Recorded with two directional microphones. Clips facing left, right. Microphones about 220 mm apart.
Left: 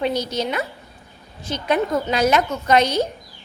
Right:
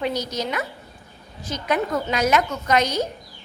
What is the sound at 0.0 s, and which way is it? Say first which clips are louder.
A woman's voice: left 3 dB; 30° left (ahead or behind).